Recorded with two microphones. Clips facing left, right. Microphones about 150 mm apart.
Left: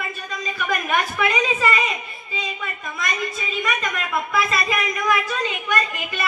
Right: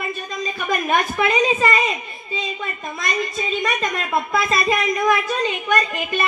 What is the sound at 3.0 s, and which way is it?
Speech, 30° right (ahead or behind).